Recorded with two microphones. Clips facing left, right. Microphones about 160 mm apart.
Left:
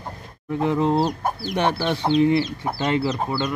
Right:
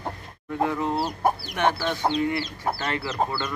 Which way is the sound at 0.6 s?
20° left (ahead or behind).